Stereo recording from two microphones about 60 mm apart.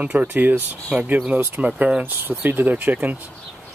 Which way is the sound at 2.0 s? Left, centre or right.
Right.